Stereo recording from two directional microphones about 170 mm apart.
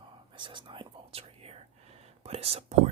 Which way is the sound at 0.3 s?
30° right (ahead or behind).